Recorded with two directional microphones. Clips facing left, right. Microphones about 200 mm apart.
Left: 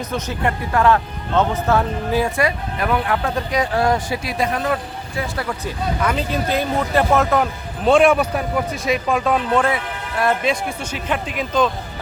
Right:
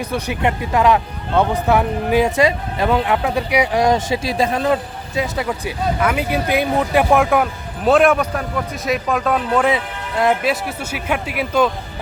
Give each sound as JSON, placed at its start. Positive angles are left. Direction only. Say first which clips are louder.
{"t": 0.0, "sound": "speech", "louder": "right 2 dB", "side_deg": -15}
{"t": 7.9, "sound": "speech", "louder": "even", "side_deg": 0}
{"t": 9.6, "sound": "speech", "louder": "right 3 dB", "side_deg": -20}
{"t": 10.4, "sound": "speech", "louder": "right 1 dB", "side_deg": -5}